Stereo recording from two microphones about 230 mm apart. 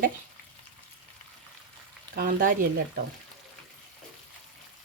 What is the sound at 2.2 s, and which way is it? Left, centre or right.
Speech, right.